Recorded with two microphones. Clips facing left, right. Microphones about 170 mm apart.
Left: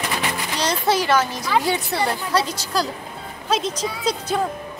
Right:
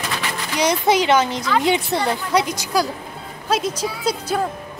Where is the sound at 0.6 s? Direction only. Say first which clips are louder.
Right 4 dB; 15° right (ahead or behind).